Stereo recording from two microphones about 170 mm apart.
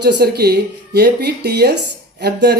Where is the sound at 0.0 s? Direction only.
70° right (ahead or behind).